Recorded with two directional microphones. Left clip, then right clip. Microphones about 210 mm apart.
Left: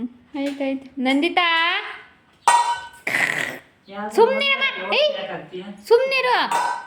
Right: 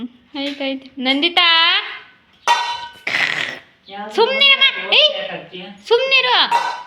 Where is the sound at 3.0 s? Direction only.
15° left (ahead or behind).